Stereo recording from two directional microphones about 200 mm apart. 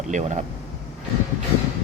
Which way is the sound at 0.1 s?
35° right (ahead or behind).